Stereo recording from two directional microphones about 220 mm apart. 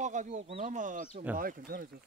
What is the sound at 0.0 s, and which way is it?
Speech, 35° right (ahead or behind).